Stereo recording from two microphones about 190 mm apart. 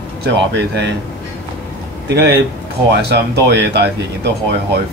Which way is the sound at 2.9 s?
65° right (ahead or behind).